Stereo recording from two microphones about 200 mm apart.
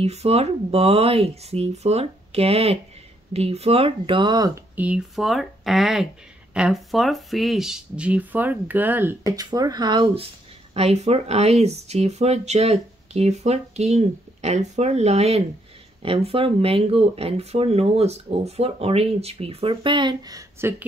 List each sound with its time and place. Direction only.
0.0 s speech: 30° right (ahead or behind)
4.7 s speech: 5° right (ahead or behind)